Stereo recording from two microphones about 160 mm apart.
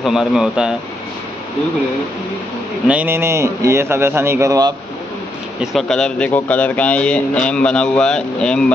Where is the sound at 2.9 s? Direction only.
10° right (ahead or behind).